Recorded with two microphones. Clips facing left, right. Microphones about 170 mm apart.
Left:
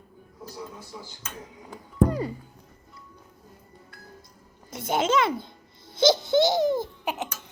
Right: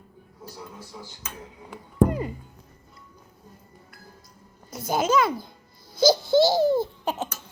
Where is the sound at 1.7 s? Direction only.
35° left (ahead or behind).